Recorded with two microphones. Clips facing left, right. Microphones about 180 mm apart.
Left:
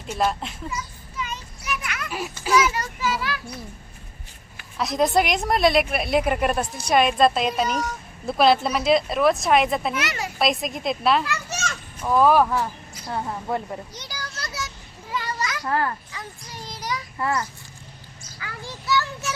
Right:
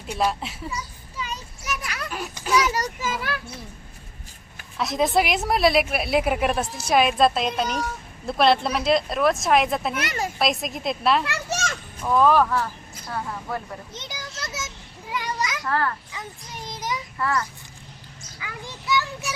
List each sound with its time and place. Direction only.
0.2 s a woman's voice: centre (ahead or behind)
0.7 s children playing: 35° right (ahead or behind)
2.6 s a child's voice: 40° right (ahead or behind)
4.8 s a woman's voice: centre (ahead or behind)
9.9 s a child's voice: 50° right (ahead or behind)
10.3 s a woman's voice: centre (ahead or behind); by 13.7 s 25° left (ahead or behind)
13.9 s a sound: 20° right (ahead or behind)
15.1 s children playing: 15° right (ahead or behind)
15.6 s speech: 20° left (ahead or behind)
16.1 s child singing: 20° right (ahead or behind)
17.2 s speech: 20° left (ahead or behind)
18.3 s a child's voice: 15° right (ahead or behind)